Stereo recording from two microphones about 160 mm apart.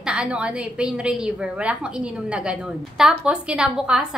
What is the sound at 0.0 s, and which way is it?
A woman's voice, 5° right (ahead or behind).